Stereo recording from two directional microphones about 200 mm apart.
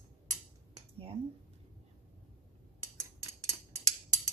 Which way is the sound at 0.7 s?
30° right (ahead or behind).